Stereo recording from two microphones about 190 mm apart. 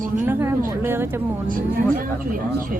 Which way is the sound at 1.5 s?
45° right (ahead or behind).